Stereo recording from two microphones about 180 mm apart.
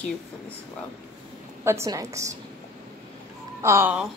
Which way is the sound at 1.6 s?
15° right (ahead or behind).